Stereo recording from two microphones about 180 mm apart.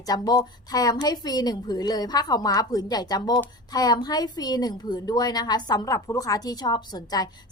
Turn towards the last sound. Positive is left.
turn(degrees=20)  # may be behind; listen again after turning